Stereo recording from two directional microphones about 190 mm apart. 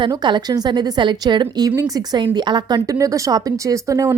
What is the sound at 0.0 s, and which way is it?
A woman's voice, 25° right (ahead or behind).